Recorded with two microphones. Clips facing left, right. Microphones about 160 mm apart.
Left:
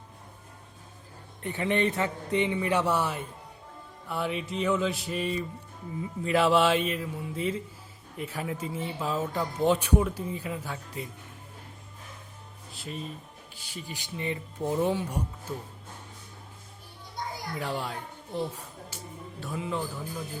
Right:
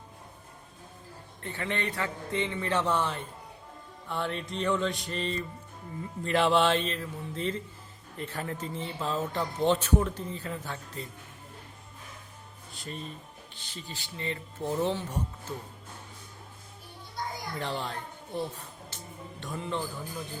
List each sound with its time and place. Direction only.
1.4 s speech: 15° left (ahead or behind)
4.1 s mantra: 5° left (ahead or behind)
6.0 s speech: 5° left (ahead or behind)
12.7 s mantra: 5° left (ahead or behind)
13.6 s speech: 10° left (ahead or behind)
17.6 s speech: 10° left (ahead or behind)
18.5 s music: 10° left (ahead or behind)